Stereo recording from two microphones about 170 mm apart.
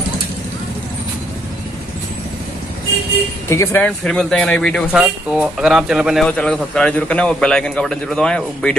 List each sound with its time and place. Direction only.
3.4 s speech: 15° left (ahead or behind)
3.8 s speech: 5° left (ahead or behind)